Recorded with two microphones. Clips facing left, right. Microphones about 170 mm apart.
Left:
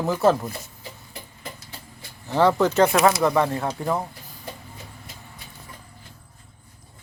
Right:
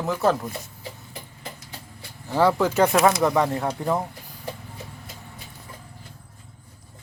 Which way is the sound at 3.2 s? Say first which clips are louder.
Even; 15° right (ahead or behind).